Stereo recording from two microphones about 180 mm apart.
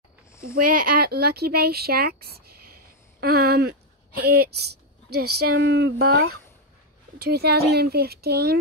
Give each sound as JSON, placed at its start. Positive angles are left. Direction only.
{"t": 0.6, "sound": "speech", "side_deg": -55}
{"t": 5.5, "sound": "speech", "side_deg": -65}